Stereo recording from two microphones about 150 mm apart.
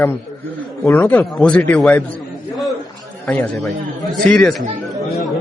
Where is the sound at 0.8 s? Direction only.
15° left (ahead or behind).